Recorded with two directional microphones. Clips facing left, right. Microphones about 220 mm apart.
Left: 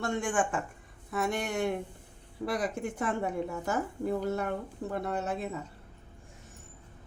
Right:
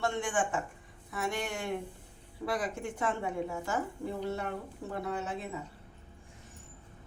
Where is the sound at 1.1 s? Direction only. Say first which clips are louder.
Left 4 dB; 45° left (ahead or behind).